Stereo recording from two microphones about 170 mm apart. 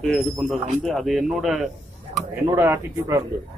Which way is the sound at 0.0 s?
Centre (ahead or behind).